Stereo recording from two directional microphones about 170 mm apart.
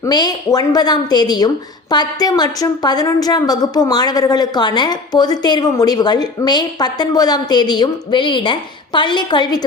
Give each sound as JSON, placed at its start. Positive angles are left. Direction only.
{"t": 0.0, "sound": "a woman's voice", "side_deg": 25}